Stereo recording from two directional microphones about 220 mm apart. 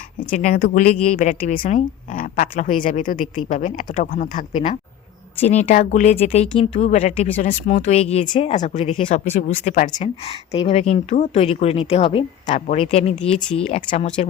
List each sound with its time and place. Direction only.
0.3 s speech: 35° left (ahead or behind)